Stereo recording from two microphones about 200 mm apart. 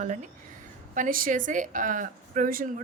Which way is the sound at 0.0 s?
35° right (ahead or behind).